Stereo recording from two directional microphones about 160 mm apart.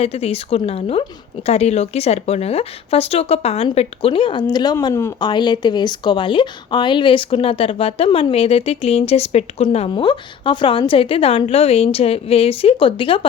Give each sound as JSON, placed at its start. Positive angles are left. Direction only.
{"t": 0.0, "sound": "speech", "side_deg": 40}